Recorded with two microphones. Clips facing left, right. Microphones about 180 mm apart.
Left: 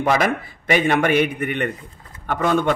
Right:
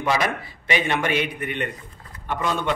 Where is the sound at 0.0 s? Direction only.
50° left (ahead or behind).